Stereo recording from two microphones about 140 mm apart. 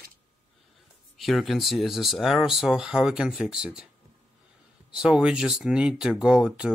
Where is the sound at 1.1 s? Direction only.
Centre (ahead or behind).